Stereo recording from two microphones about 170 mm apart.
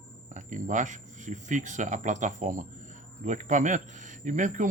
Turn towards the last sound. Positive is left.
turn(degrees=-50)  # may be behind; listen again after turning